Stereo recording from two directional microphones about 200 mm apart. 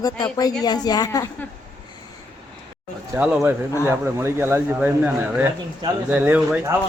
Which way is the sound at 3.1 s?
5° right (ahead or behind).